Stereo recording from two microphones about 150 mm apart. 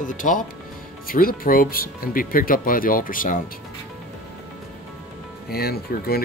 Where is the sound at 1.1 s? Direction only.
70° left (ahead or behind).